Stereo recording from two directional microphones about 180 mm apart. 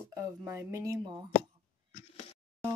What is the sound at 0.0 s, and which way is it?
Speech, 15° right (ahead or behind).